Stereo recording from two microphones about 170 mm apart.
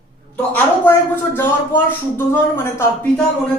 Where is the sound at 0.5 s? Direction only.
10° left (ahead or behind).